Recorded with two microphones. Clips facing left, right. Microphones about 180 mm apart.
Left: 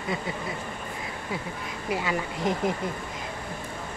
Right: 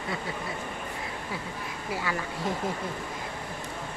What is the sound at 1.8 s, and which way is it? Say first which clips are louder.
Speech: left 4 dB; 20° left (ahead or behind).